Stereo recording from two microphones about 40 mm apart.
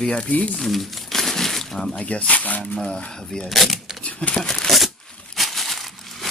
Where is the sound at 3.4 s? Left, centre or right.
Centre.